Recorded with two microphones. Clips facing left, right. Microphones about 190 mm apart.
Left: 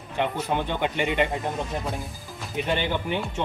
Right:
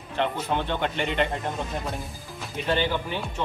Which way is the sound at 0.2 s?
10° left (ahead or behind).